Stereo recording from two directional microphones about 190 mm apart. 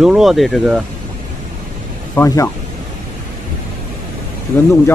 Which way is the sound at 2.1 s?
15° left (ahead or behind).